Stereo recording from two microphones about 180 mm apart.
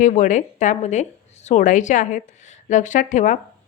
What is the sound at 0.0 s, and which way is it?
Speech, 45° left (ahead or behind).